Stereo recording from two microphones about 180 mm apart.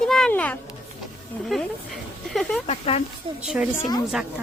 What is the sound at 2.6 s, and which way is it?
Speech, 35° left (ahead or behind).